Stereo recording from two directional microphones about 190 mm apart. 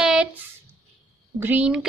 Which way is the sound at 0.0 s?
5° right (ahead or behind).